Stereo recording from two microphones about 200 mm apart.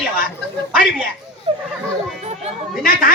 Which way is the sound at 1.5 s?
30° right (ahead or behind).